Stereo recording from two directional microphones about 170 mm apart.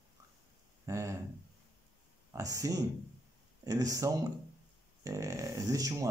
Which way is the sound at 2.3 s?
20° right (ahead or behind).